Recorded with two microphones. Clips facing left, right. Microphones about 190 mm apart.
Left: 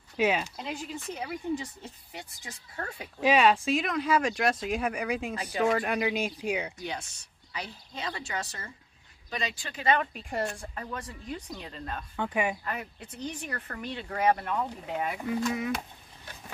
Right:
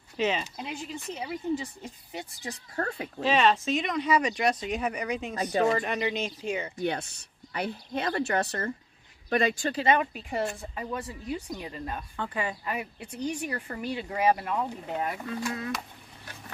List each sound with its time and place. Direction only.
0.2 s speech: 10° left (ahead or behind)
0.6 s speech: centre (ahead or behind)
2.4 s speech: 50° right (ahead or behind)
3.2 s speech: 10° left (ahead or behind)
5.3 s speech: 35° right (ahead or behind)
5.7 s speech: 5° left (ahead or behind)
6.8 s speech: 60° right (ahead or behind)
10.1 s speech: centre (ahead or behind)
12.2 s speech: 10° left (ahead or behind)
12.6 s speech: 10° right (ahead or behind)